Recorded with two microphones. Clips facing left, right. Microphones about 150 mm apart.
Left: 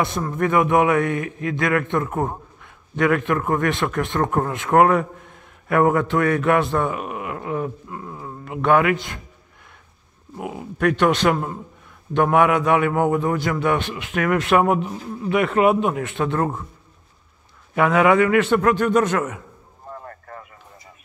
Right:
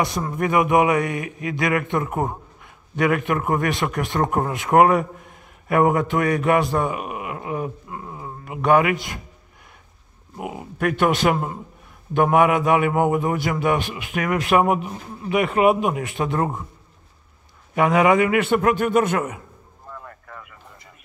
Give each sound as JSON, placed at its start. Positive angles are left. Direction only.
{"t": 0.2, "sound": "speech", "side_deg": -10}
{"t": 0.8, "sound": "speech", "side_deg": 0}
{"t": 3.0, "sound": "speech", "side_deg": -5}
{"t": 3.3, "sound": "speech", "side_deg": -15}
{"t": 6.2, "sound": "speech", "side_deg": 0}
{"t": 10.3, "sound": "speech", "side_deg": -5}
{"t": 13.1, "sound": "speech", "side_deg": -15}
{"t": 13.6, "sound": "speech", "side_deg": -5}
{"t": 17.7, "sound": "speech", "side_deg": -5}
{"t": 19.9, "sound": "a sound", "side_deg": 40}